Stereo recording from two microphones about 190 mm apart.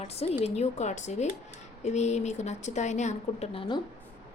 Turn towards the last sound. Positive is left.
turn(degrees=30)  # may be behind; listen again after turning